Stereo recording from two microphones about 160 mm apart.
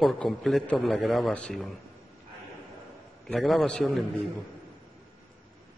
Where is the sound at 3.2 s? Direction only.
Centre (ahead or behind).